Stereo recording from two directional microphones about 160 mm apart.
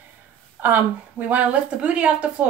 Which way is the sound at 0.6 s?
10° right (ahead or behind).